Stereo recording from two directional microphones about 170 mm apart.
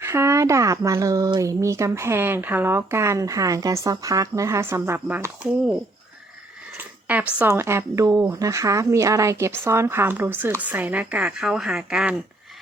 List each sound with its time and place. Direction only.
0.0 s speech: 15° right (ahead or behind)
6.7 s speech: 10° right (ahead or behind)